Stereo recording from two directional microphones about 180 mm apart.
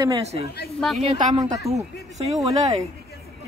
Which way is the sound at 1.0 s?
40° right (ahead or behind).